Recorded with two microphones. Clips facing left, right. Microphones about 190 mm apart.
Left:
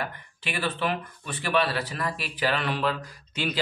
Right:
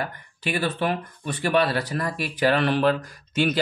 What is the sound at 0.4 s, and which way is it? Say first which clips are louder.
Speech: right 4 dB; 40° right (ahead or behind).